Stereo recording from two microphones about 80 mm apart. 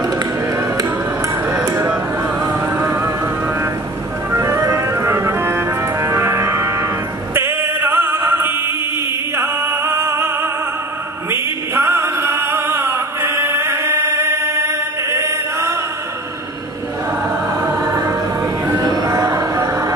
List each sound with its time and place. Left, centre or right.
2.6 s vehicle: right
4.3 s music: right
18.7 s music: right